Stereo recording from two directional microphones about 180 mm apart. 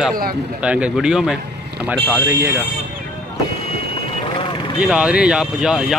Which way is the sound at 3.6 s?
35° left (ahead or behind).